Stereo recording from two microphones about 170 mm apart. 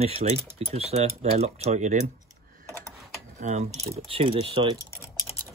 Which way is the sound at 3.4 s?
45° right (ahead or behind).